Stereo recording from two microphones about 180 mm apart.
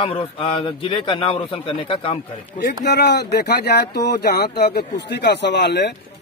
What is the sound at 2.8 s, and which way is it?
Speech, 65° left (ahead or behind).